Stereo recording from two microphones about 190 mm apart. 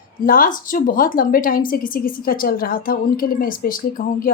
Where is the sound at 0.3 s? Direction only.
45° left (ahead or behind).